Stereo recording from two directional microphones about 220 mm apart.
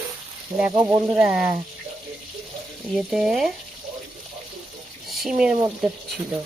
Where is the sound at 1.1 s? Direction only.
5° right (ahead or behind).